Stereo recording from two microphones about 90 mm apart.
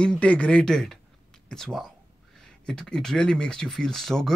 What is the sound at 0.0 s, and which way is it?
Speech, 10° left (ahead or behind).